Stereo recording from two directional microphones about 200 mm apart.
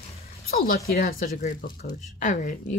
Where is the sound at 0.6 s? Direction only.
50° left (ahead or behind).